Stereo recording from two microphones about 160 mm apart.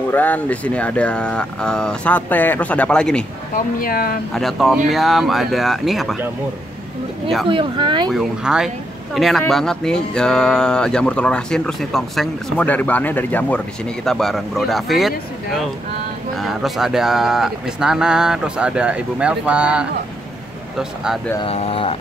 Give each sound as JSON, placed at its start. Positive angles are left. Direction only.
{"t": 0.1, "sound": "speech", "side_deg": 10}
{"t": 3.5, "sound": "speech", "side_deg": 65}
{"t": 4.3, "sound": "speech", "side_deg": 0}
{"t": 7.4, "sound": "speech", "side_deg": -30}
{"t": 8.1, "sound": "speech", "side_deg": -5}
{"t": 21.4, "sound": "speech", "side_deg": 35}